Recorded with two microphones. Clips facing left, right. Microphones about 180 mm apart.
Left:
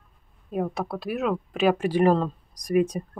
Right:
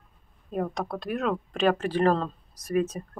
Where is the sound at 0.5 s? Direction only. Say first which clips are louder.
Left 2 dB; 5° left (ahead or behind).